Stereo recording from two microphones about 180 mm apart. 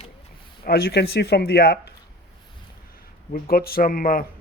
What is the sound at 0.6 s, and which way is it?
Speech, 60° left (ahead or behind).